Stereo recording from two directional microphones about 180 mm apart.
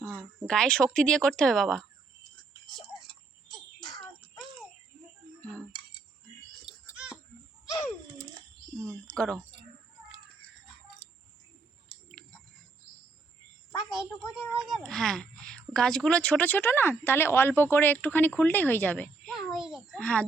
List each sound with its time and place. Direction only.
0.4 s speech: 5° left (ahead or behind)
3.8 s a sound: 25° left (ahead or behind)
9.1 s speech: 5° left (ahead or behind)
14.3 s speech: centre (ahead or behind)